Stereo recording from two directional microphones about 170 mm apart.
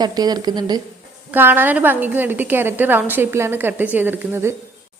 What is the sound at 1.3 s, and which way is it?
A woman's voice, 10° right (ahead or behind).